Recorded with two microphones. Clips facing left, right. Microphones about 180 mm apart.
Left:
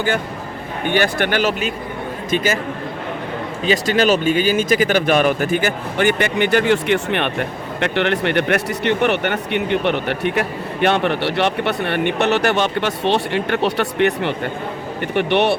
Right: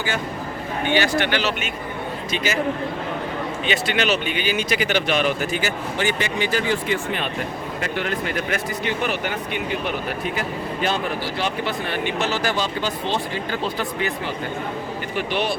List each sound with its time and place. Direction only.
0.9 s speech: 55° left (ahead or behind)
3.7 s speech: 40° left (ahead or behind); by 15.5 s 65° left (ahead or behind)